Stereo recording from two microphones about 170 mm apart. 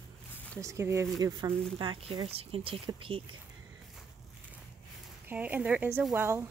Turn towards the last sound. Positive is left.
turn(degrees=-15)  # may be behind; listen again after turning